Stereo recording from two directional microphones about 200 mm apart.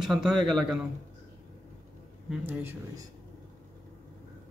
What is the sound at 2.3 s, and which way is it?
Speech, 10° right (ahead or behind).